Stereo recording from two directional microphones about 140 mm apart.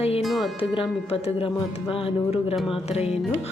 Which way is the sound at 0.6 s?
40° left (ahead or behind).